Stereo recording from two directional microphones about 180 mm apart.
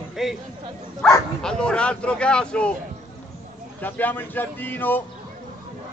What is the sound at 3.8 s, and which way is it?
Speech, 10° left (ahead or behind).